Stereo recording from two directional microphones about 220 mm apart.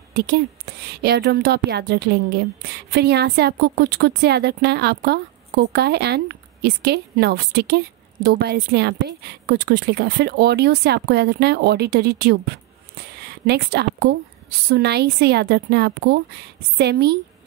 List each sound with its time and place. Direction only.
0.1 s a woman's voice: 45° right (ahead or behind)